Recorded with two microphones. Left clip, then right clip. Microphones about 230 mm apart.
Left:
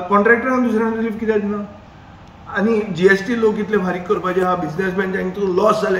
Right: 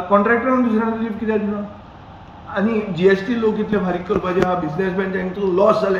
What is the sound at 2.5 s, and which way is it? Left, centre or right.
A man's voice, left.